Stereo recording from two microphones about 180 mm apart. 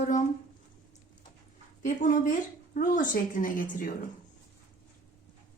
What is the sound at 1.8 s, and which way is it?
Speech, 45° left (ahead or behind).